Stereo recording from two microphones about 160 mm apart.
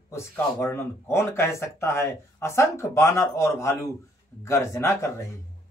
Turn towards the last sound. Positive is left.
turn(degrees=15)  # may be behind; listen again after turning